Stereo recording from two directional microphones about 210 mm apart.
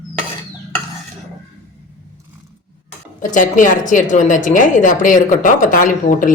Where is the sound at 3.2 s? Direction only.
40° left (ahead or behind).